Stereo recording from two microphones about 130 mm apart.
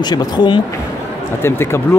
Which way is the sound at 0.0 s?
35° left (ahead or behind).